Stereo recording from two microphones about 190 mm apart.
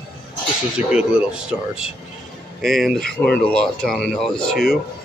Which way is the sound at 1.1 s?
5° right (ahead or behind).